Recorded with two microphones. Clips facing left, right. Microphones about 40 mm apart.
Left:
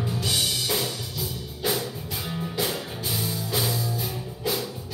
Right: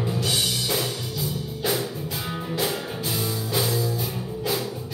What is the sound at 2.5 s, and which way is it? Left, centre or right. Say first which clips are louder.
Music: right 3 dB; centre.